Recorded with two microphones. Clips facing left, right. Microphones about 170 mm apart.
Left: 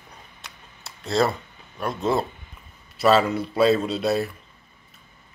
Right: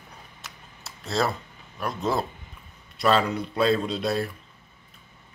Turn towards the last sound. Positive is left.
turn(degrees=5)  # may be behind; listen again after turning